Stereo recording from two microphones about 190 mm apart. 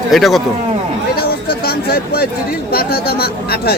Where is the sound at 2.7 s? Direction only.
55° left (ahead or behind).